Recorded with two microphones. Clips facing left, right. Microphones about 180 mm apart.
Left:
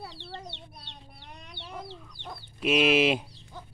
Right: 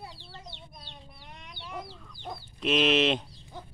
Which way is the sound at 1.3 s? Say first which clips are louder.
Left 2 dB; 40° left (ahead or behind).